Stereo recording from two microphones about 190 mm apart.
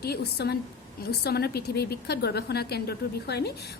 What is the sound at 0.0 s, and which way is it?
A woman's voice, 55° left (ahead or behind).